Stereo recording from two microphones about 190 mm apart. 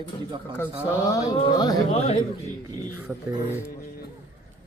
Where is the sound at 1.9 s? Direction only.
35° left (ahead or behind).